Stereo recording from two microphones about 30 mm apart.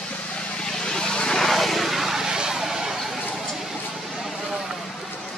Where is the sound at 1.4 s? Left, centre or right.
Centre; by 2.6 s right.